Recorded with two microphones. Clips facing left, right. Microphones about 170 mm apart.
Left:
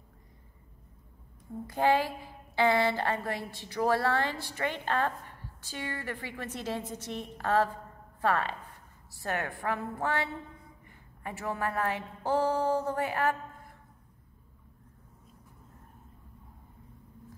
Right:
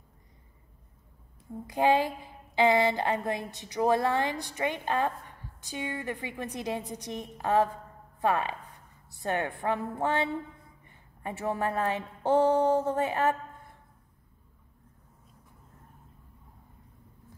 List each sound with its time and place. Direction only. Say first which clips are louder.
1.7 s a woman's voice: right 2 dB; 15° right (ahead or behind)